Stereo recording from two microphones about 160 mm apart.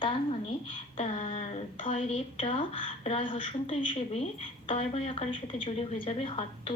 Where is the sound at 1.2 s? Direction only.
40° left (ahead or behind).